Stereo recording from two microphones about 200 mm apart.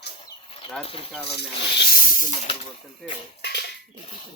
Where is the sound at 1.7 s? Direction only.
45° left (ahead or behind).